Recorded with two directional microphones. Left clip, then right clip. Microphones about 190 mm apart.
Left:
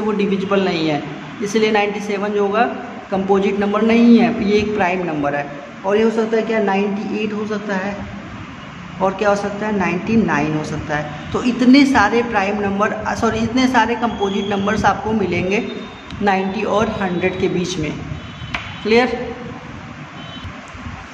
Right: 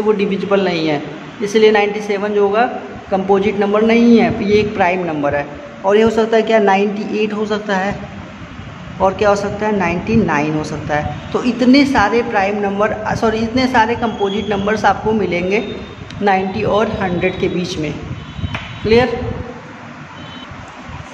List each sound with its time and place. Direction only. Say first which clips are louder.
0.2 s a woman's voice: right 2 dB; 10° right (ahead or behind)
5.9 s a woman's voice: right 4 dB; 20° right (ahead or behind)
9.0 s a woman's voice: right 3 dB; 10° right (ahead or behind)